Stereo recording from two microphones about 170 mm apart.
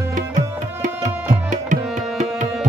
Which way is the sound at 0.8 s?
45° right (ahead or behind).